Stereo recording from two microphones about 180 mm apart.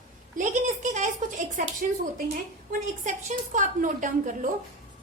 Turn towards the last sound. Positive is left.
turn(degrees=-45)  # may be behind; listen again after turning